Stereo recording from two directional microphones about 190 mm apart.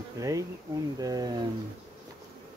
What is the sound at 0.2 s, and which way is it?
Speech, 15° right (ahead or behind).